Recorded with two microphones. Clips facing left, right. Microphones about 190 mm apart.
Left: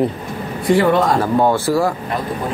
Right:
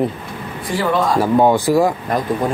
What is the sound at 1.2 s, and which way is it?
Speech, 15° right (ahead or behind).